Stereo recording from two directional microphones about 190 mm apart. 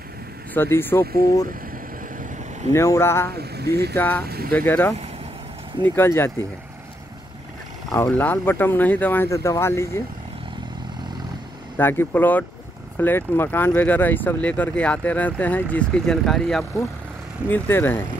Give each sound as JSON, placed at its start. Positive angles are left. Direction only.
{"t": 0.6, "sound": "speech", "side_deg": 10}
{"t": 2.7, "sound": "speech", "side_deg": 15}
{"t": 3.3, "sound": "speech", "side_deg": -60}
{"t": 3.9, "sound": "speech", "side_deg": 10}
{"t": 7.9, "sound": "speech", "side_deg": 10}
{"t": 11.7, "sound": "speech", "side_deg": 10}